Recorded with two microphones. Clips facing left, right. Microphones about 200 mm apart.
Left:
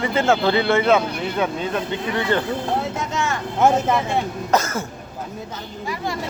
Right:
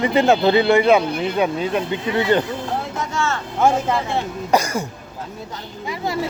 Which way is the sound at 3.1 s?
20° left (ahead or behind).